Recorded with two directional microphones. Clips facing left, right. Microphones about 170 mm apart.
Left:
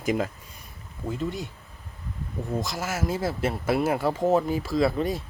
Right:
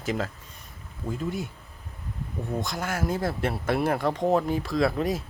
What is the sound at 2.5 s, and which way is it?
Speech, centre (ahead or behind).